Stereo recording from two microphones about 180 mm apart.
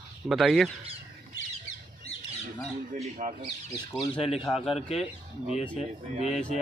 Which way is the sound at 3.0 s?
45° right (ahead or behind).